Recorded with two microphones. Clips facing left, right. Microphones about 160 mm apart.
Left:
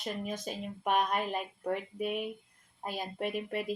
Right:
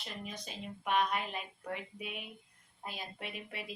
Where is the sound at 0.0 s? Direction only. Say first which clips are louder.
Left 8 dB; 45° left (ahead or behind).